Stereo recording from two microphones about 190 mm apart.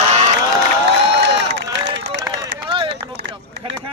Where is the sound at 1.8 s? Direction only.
65° right (ahead or behind).